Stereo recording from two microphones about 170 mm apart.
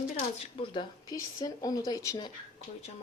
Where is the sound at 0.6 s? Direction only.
25° left (ahead or behind).